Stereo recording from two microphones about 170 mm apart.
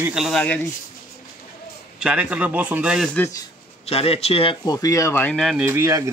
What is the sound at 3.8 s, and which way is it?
Speech, 35° left (ahead or behind).